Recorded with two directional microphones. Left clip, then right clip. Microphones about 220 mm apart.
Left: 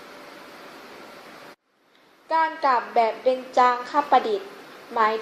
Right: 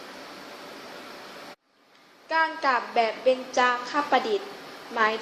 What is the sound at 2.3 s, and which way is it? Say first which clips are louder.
Speech: left 3 dB; 20° left (ahead or behind).